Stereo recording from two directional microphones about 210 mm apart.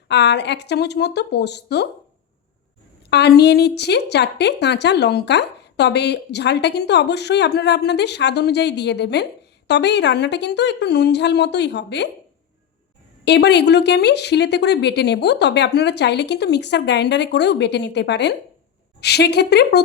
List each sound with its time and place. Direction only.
0.1 s a woman's voice: 55° left (ahead or behind)
3.1 s a woman's voice: 50° left (ahead or behind)
13.2 s a woman's voice: 55° left (ahead or behind)